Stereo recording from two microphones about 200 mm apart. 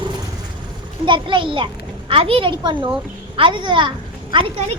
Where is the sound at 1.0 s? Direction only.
25° right (ahead or behind).